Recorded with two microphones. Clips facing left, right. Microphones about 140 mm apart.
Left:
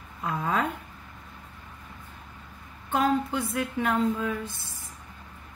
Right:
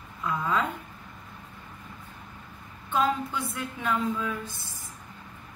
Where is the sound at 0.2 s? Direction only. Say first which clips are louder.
Even; 60° left (ahead or behind).